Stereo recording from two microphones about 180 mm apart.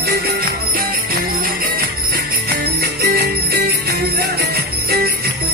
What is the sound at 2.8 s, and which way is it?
Jingle bell, 60° right (ahead or behind).